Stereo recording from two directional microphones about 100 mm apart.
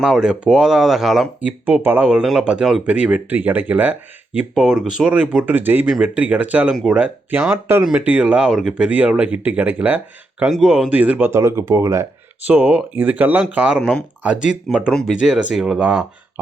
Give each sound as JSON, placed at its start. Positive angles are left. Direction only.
{"t": 0.0, "sound": "speech", "side_deg": -5}
{"t": 1.4, "sound": "speech", "side_deg": -15}
{"t": 4.5, "sound": "speech", "side_deg": 0}
{"t": 10.9, "sound": "speech", "side_deg": -15}
{"t": 11.3, "sound": "speech", "side_deg": -25}
{"t": 12.5, "sound": "speech", "side_deg": -15}
{"t": 14.8, "sound": "speech", "side_deg": 5}
{"t": 15.2, "sound": "speech", "side_deg": -10}